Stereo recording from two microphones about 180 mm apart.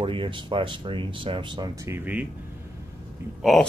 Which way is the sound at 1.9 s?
10° right (ahead or behind).